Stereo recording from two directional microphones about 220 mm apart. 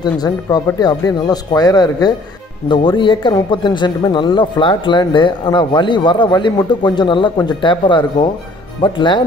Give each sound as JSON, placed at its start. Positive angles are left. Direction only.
{"t": 0.0, "sound": "speech", "side_deg": 20}